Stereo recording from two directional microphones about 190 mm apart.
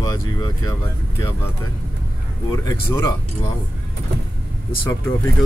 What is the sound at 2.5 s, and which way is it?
Speech, 15° left (ahead or behind).